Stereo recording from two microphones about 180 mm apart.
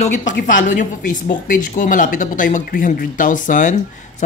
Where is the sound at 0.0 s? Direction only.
45° left (ahead or behind).